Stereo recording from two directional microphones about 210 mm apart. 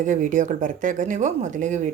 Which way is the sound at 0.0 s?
35° right (ahead or behind).